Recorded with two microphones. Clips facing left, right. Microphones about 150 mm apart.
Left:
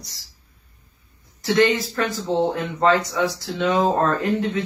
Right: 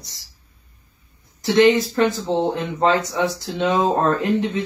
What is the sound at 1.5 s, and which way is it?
Speech, 20° right (ahead or behind).